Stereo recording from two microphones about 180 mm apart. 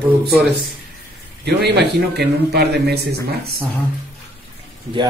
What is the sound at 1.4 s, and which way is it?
A man's voice, 65° right (ahead or behind).